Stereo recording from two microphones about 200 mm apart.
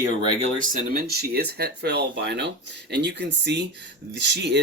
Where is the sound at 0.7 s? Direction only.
45° right (ahead or behind).